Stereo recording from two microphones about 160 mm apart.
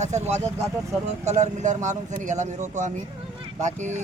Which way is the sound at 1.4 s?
50° right (ahead or behind).